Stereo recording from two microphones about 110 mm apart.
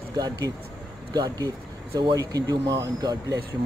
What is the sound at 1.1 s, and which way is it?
Speech, 35° right (ahead or behind).